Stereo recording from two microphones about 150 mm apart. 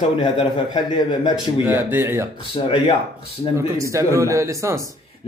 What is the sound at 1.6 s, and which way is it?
Speech, 15° right (ahead or behind).